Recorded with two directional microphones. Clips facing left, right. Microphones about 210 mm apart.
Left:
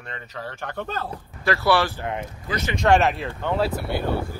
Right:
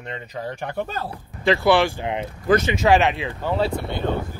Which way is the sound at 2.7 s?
Centre (ahead or behind).